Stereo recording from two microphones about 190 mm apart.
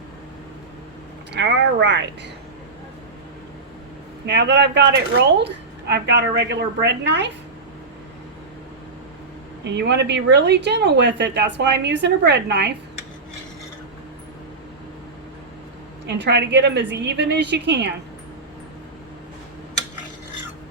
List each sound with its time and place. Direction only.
1.3 s speech: 70° right (ahead or behind)
4.3 s speech: 65° right (ahead or behind)
9.6 s speech: 65° right (ahead or behind)
16.0 s speech: 65° right (ahead or behind)